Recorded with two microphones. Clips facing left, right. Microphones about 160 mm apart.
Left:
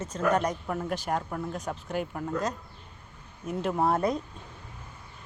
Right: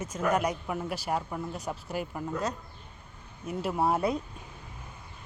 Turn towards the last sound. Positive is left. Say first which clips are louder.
# left 1 dB
turn(degrees=-10)  # may be behind; listen again after turning